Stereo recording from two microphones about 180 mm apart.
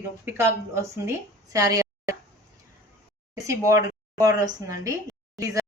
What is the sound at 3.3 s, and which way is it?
Speech, 15° right (ahead or behind).